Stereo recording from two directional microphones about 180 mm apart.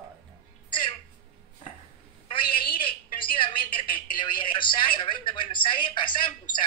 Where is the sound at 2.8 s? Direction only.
30° left (ahead or behind).